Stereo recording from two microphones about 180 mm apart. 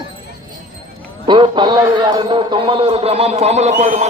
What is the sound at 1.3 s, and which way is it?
A man's voice, 25° right (ahead or behind).